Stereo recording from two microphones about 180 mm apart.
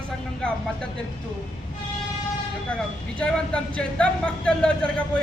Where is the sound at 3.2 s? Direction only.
5° left (ahead or behind).